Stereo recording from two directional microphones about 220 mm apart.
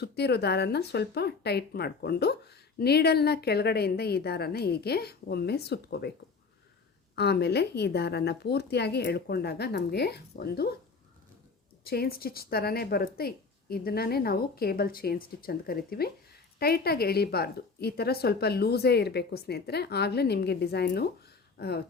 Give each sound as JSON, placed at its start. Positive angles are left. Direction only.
{"t": 0.0, "sound": "speech", "side_deg": 50}
{"t": 7.2, "sound": "speech", "side_deg": 50}
{"t": 11.9, "sound": "speech", "side_deg": 45}